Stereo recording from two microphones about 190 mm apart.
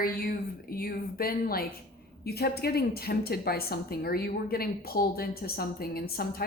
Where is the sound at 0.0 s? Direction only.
50° left (ahead or behind).